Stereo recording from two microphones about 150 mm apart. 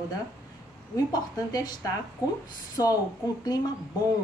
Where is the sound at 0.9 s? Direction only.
25° left (ahead or behind).